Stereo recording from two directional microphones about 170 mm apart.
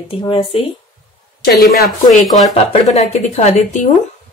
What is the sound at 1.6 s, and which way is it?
Speech, 65° left (ahead or behind).